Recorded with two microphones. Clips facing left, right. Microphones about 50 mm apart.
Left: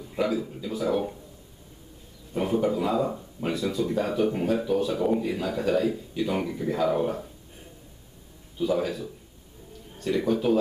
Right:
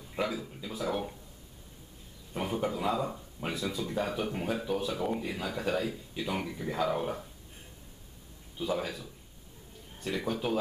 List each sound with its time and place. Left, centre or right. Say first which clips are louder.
0.0 s speech: left 7 dB; centre
2.3 s speech: left 7 dB; centre
8.5 s speech: left 7 dB; centre